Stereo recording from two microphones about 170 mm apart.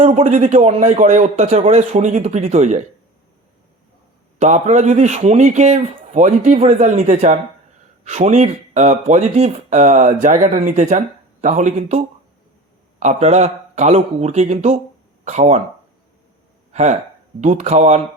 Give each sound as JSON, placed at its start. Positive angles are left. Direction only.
{"t": 0.0, "sound": "a man's voice", "side_deg": -40}
{"t": 4.4, "sound": "a man's voice", "side_deg": -40}
{"t": 16.7, "sound": "a man's voice", "side_deg": -40}